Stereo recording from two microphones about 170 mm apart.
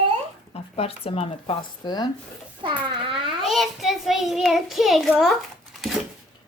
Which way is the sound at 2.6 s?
30° right (ahead or behind).